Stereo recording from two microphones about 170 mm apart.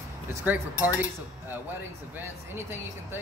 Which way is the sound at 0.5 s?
10° right (ahead or behind).